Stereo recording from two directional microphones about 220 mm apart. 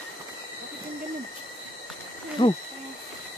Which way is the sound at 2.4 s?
20° left (ahead or behind).